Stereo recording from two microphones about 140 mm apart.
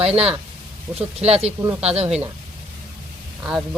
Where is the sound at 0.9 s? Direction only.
45° right (ahead or behind).